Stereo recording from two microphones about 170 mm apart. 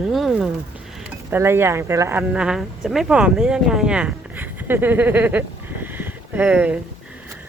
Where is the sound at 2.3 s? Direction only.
5° right (ahead or behind).